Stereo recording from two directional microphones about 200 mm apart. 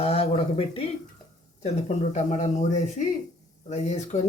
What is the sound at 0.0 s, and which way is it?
Speech, 30° left (ahead or behind).